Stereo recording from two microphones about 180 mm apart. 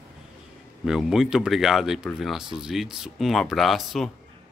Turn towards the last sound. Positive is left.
turn(degrees=0)  # may be behind; listen again after turning